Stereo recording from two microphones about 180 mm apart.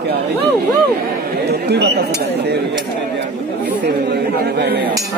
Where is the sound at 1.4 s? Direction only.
65° right (ahead or behind).